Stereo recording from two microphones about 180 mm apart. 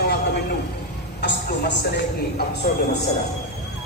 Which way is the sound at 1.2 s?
75° left (ahead or behind).